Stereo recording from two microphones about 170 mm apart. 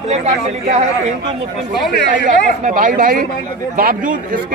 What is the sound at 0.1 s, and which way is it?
Speech, 40° right (ahead or behind).